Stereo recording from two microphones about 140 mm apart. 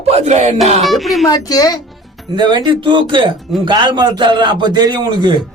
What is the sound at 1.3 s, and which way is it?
Speech, 25° left (ahead or behind).